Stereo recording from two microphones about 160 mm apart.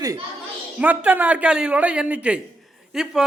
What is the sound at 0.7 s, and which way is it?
Speech, 10° right (ahead or behind).